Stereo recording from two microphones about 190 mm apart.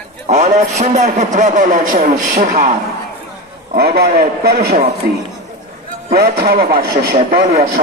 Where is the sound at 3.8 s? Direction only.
55° right (ahead or behind).